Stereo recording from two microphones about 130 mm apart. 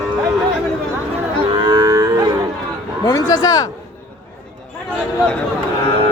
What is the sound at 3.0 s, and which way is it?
Speech, 30° left (ahead or behind).